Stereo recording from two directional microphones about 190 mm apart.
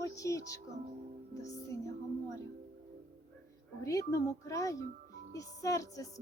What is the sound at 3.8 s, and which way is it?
Music, 15° left (ahead or behind).